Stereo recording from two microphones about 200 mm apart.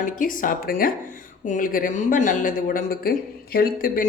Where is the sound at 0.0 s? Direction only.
40° left (ahead or behind).